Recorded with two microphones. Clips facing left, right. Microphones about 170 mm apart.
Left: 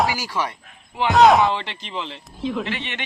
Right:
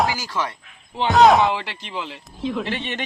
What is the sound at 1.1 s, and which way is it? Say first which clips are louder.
Speech: even; centre (ahead or behind).